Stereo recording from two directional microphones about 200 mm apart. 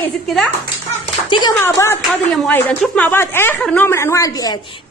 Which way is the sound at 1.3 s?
20° left (ahead or behind).